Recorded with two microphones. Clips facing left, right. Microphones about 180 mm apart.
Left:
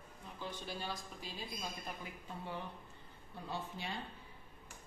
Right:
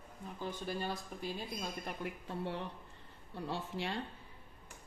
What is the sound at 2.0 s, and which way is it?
A woman's voice, 75° right (ahead or behind).